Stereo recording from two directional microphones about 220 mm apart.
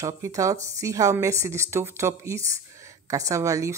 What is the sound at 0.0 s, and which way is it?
A woman's voice, 15° right (ahead or behind).